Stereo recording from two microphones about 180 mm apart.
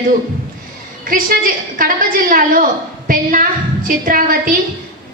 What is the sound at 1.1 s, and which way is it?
A woman's voice, 50° right (ahead or behind).